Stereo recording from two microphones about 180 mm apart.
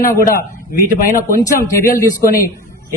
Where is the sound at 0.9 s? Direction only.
50° left (ahead or behind).